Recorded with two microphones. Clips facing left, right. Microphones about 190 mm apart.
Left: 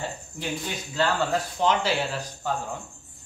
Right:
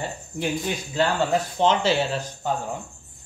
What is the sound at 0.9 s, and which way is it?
Speech, 25° right (ahead or behind).